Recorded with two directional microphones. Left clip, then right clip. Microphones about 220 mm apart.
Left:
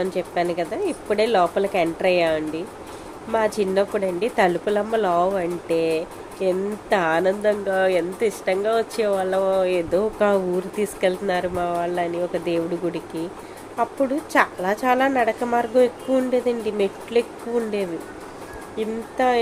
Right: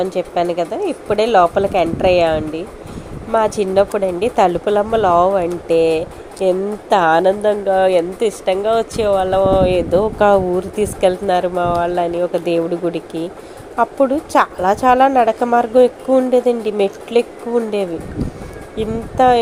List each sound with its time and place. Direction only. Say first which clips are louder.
0.0 s a woman's voice: right 6 dB; 15° right (ahead or behind)
14.3 s a woman's voice: right 5 dB; 15° right (ahead or behind)
18.8 s speech: right 8 dB; 20° right (ahead or behind)